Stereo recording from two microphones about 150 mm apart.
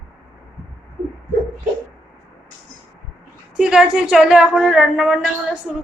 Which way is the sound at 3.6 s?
5° right (ahead or behind).